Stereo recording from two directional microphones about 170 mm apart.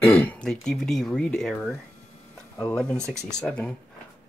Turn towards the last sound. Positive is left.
turn(degrees=5)  # may be behind; listen again after turning